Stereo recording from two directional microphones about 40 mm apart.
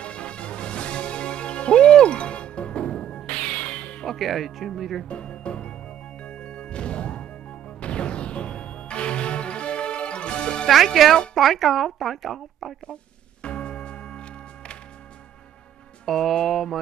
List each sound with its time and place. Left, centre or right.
0.0 s music: left
4.2 s speech: centre
5.0 s music: left
11.0 s speech: centre
13.4 s music: left
16.1 s speech: centre